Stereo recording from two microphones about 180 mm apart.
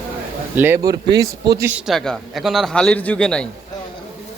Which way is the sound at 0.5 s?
15° right (ahead or behind).